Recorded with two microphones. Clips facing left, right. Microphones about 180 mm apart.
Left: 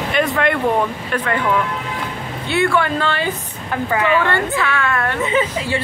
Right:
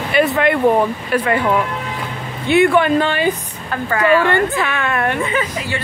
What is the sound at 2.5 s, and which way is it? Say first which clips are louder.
A woman's voice: right 5 dB; 15° right (ahead or behind).